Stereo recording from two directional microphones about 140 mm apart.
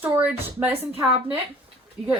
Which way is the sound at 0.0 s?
15° right (ahead or behind).